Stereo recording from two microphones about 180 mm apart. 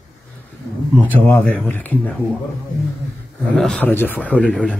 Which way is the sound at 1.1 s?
5° left (ahead or behind).